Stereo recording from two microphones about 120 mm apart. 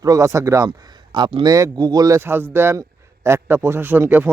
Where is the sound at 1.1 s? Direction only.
40° right (ahead or behind).